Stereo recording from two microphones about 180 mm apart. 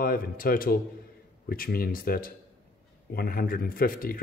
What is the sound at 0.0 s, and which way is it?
A man's voice, 55° left (ahead or behind).